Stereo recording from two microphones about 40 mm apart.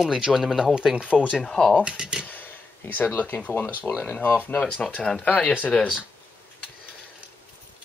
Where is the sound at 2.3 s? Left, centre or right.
Left.